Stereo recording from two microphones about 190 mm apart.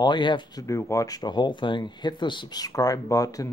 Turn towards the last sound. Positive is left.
turn(degrees=15)  # may be behind; listen again after turning